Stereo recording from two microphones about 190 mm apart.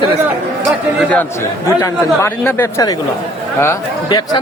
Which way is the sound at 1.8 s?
15° left (ahead or behind).